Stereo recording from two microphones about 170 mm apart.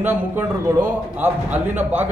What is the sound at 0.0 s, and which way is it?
A man's voice, 10° right (ahead or behind).